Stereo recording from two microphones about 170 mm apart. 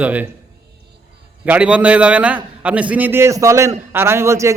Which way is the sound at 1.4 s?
5° right (ahead or behind).